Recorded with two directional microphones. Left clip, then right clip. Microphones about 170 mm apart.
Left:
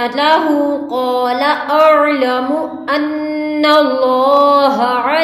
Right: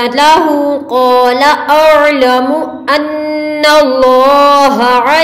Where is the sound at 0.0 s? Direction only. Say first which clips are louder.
Right 5 dB; 40° right (ahead or behind).